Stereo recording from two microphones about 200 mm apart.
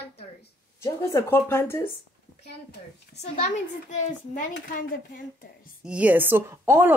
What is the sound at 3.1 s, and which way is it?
A child's voice, 35° left (ahead or behind).